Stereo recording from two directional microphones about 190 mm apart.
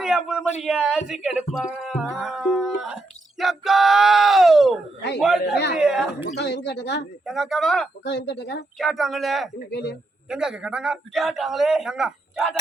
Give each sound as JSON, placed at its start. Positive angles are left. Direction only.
{"t": 0.0, "sound": "a sound", "side_deg": -5}
{"t": 0.6, "sound": "a man's voice", "side_deg": -5}
{"t": 6.2, "sound": "speech", "side_deg": 65}
{"t": 7.3, "sound": "a man's voice", "side_deg": 0}
{"t": 8.0, "sound": "speech", "side_deg": 65}
{"t": 8.8, "sound": "a man's voice", "side_deg": 0}
{"t": 9.6, "sound": "speech", "side_deg": 65}
{"t": 10.2, "sound": "a man's voice", "side_deg": -5}